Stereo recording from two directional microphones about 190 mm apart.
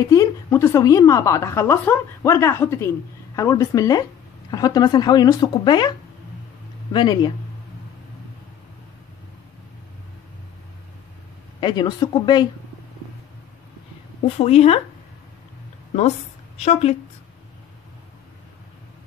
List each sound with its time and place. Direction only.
0.0 s a woman's voice: 15° left (ahead or behind)
11.6 s speech: 25° left (ahead or behind)
14.4 s speech: 35° left (ahead or behind)
16.5 s a woman's voice: 35° left (ahead or behind)